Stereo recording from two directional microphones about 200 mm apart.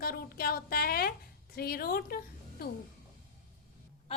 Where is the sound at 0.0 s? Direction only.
50° left (ahead or behind).